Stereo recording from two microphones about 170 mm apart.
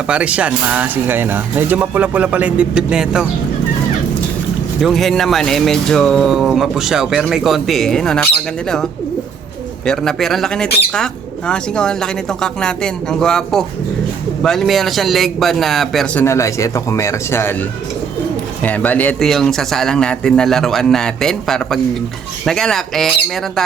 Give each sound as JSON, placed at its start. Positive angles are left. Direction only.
{"t": 0.1, "sound": "speech", "side_deg": -5}
{"t": 4.8, "sound": "speech", "side_deg": 0}
{"t": 9.8, "sound": "speech", "side_deg": 5}
{"t": 16.2, "sound": "speech", "side_deg": 15}